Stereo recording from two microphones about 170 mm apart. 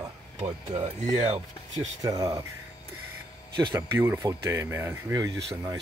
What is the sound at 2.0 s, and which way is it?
Speech, 20° right (ahead or behind).